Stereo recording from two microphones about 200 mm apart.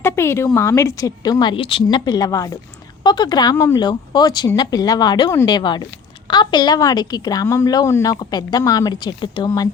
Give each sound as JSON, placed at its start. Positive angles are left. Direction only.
{"t": 0.0, "sound": "a woman's voice", "side_deg": 10}